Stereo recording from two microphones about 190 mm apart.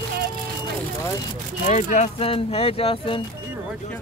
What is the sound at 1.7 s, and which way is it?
Speech, 40° left (ahead or behind).